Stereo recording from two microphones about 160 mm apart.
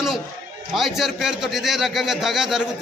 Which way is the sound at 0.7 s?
Centre (ahead or behind).